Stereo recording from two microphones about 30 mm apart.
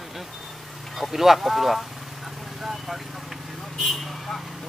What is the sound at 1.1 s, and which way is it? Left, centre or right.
Speech, centre.